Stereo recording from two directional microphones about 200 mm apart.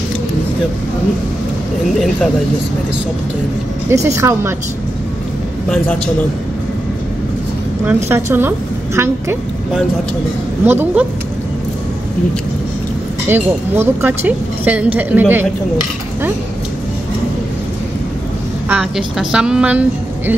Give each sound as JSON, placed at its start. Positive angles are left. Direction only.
{"t": 3.9, "sound": "a woman's voice", "side_deg": -15}
{"t": 7.8, "sound": "a woman's voice", "side_deg": -10}
{"t": 10.6, "sound": "a woman's voice", "side_deg": -10}
{"t": 13.3, "sound": "a woman's voice", "side_deg": -10}
{"t": 18.7, "sound": "a woman's voice", "side_deg": -5}